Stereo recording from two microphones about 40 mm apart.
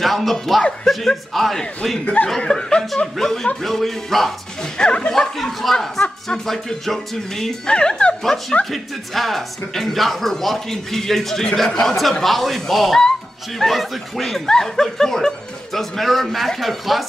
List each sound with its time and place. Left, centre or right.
0.0 s speech: centre
4.7 s speech: left
5.1 s speech: centre
7.6 s speech: left
8.2 s speech: centre